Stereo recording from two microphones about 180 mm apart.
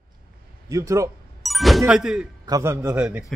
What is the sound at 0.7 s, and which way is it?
Speech, 15° right (ahead or behind).